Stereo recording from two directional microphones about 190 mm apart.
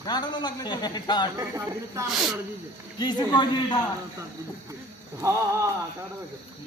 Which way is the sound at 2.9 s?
20° left (ahead or behind).